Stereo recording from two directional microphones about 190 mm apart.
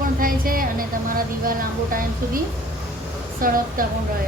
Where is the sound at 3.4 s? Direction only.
45° right (ahead or behind).